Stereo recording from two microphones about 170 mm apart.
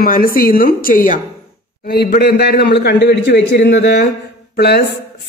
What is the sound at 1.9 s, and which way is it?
A man's voice, 70° left (ahead or behind).